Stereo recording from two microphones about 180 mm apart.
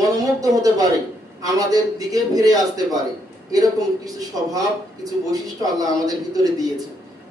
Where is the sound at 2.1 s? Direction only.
20° right (ahead or behind).